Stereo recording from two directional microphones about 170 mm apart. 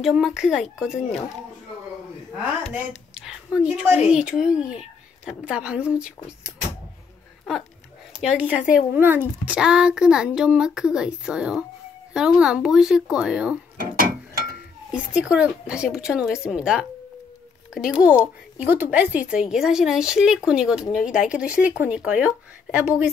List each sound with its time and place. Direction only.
0.0 s speech: centre (ahead or behind)
3.2 s speech: 5° right (ahead or behind)
8.1 s speech: 5° right (ahead or behind)
13.7 s a sound: 60° right (ahead or behind)
14.9 s speech: 5° right (ahead or behind)